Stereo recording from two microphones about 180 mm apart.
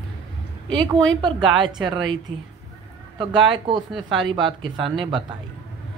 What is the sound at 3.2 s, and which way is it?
A man's voice, 25° right (ahead or behind).